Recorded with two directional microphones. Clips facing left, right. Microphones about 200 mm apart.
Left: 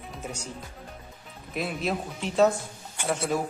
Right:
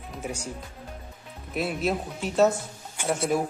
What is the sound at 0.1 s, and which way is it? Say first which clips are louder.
Speech: right 4 dB; 10° right (ahead or behind).